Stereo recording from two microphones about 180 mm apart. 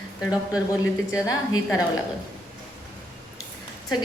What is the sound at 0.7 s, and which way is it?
A woman's voice, 15° left (ahead or behind).